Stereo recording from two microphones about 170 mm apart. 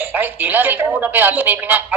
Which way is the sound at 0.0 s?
10° right (ahead or behind).